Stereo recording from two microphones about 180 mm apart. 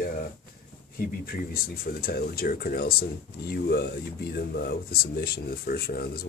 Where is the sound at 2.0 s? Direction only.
55° left (ahead or behind).